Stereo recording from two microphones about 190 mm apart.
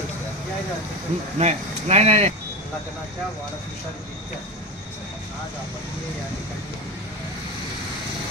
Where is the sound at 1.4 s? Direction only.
35° right (ahead or behind).